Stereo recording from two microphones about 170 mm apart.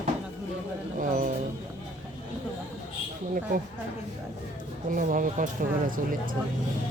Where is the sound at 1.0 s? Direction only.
50° right (ahead or behind).